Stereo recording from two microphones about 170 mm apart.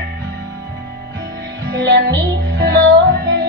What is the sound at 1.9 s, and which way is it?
Music, 90° right.